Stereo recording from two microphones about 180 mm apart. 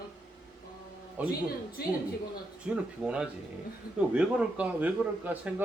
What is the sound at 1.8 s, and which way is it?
Speech, 60° left (ahead or behind).